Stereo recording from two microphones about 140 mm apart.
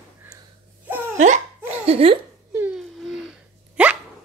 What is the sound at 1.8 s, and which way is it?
Speech, 45° right (ahead or behind).